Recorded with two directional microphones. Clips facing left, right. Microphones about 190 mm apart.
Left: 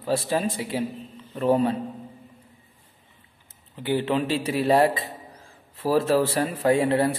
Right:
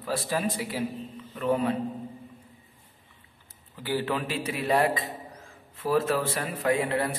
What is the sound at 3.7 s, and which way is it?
A man's voice, 20° left (ahead or behind).